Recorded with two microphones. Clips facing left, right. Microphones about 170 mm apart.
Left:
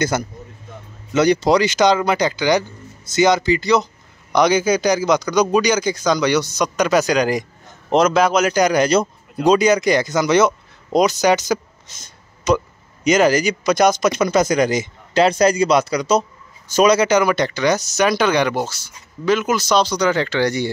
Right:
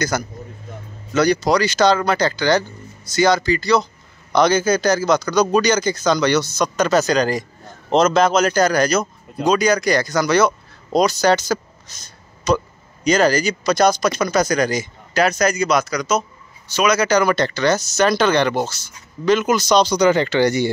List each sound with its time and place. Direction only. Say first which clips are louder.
0.1 s a man's voice: left 1 dB; 25° left (ahead or behind)
17.2 s a man's voice: even; 10° left (ahead or behind)